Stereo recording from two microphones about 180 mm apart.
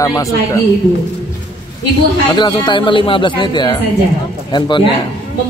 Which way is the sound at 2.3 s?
25° left (ahead or behind).